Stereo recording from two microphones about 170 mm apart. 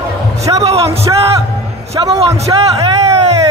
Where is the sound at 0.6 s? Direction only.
35° right (ahead or behind).